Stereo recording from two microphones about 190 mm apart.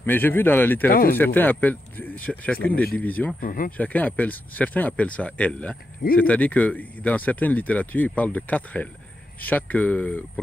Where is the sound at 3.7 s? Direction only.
10° left (ahead or behind).